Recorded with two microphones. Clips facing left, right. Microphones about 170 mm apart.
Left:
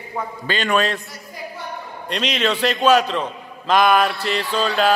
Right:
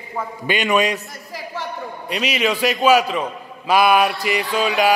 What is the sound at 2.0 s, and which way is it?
A man's voice, 10° right (ahead or behind).